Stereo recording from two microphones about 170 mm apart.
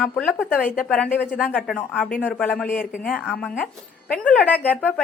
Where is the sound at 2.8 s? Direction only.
55° left (ahead or behind).